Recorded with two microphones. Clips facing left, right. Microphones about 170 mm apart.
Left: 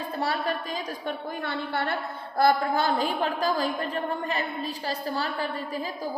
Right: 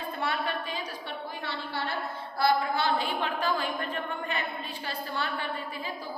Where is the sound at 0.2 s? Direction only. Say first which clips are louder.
Left 4 dB; 35° left (ahead or behind).